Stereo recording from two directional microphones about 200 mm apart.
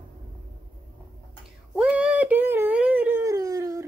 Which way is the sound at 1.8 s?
5° right (ahead or behind).